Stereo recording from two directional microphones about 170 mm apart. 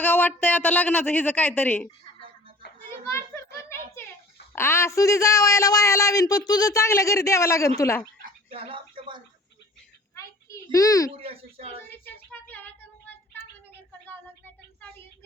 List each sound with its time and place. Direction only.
0.0 s a woman's voice: 10° left (ahead or behind)
3.0 s children playing: 15° left (ahead or behind)
4.5 s a man's voice: 15° left (ahead or behind)
8.4 s a sound: 30° right (ahead or behind)
10.2 s a sound: 20° left (ahead or behind)
11.2 s speech: 35° right (ahead or behind)
12.0 s child singing: 10° left (ahead or behind)